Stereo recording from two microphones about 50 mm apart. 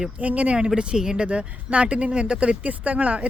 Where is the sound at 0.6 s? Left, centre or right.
Centre.